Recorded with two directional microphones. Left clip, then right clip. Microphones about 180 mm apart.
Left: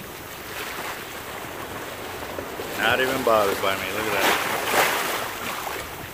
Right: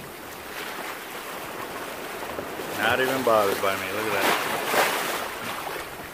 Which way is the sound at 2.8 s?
Centre (ahead or behind).